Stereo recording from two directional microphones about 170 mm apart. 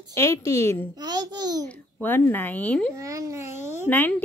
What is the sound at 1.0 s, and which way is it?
Speech, 25° right (ahead or behind).